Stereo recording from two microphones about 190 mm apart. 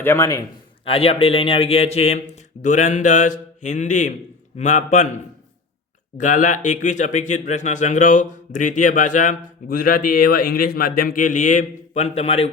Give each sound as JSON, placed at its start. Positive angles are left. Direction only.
{"t": 0.0, "sound": "a man's voice", "side_deg": 15}
{"t": 0.9, "sound": "speech", "side_deg": 30}